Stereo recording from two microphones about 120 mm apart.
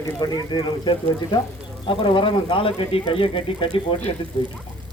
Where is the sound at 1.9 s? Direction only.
50° left (ahead or behind).